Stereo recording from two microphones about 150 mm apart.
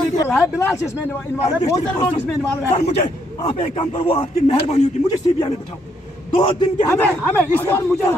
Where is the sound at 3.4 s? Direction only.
40° left (ahead or behind).